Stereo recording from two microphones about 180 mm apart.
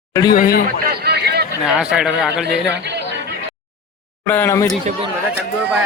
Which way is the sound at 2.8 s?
70° right (ahead or behind).